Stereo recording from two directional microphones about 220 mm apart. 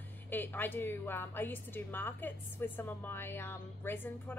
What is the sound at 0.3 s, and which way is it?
A woman's voice, 10° left (ahead or behind).